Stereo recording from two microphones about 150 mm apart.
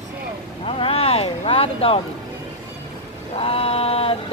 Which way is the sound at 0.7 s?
40° left (ahead or behind).